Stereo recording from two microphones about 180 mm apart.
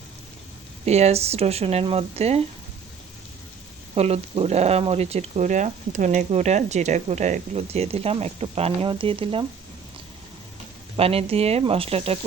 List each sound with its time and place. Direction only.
0.9 s speech: 35° right (ahead or behind)
3.9 s speech: 35° right (ahead or behind)
10.9 s speech: 35° right (ahead or behind)